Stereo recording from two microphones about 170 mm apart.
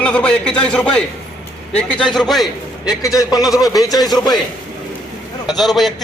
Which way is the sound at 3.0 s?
20° left (ahead or behind).